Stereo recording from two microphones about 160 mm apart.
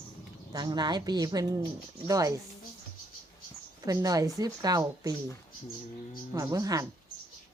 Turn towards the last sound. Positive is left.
turn(degrees=-20)  # may be behind; listen again after turning